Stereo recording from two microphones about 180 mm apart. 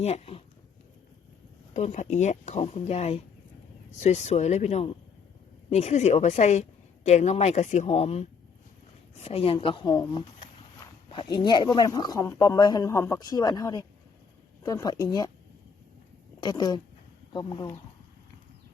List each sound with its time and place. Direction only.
0.0 s speech: 35° left (ahead or behind)
1.7 s speech: 40° left (ahead or behind); by 15.3 s 20° left (ahead or behind)
16.4 s speech: 25° left (ahead or behind)